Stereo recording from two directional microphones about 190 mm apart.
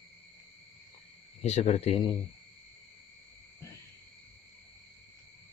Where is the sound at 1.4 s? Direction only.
35° left (ahead or behind).